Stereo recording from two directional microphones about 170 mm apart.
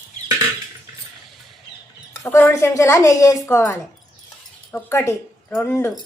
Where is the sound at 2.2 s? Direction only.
15° left (ahead or behind).